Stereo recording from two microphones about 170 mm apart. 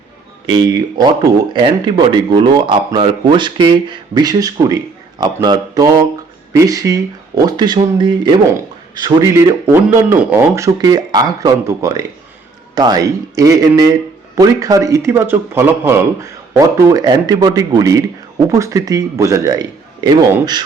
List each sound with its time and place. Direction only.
0.4 s speech: 25° right (ahead or behind)